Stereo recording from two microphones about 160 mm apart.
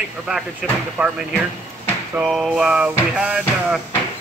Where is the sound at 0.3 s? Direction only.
5° right (ahead or behind).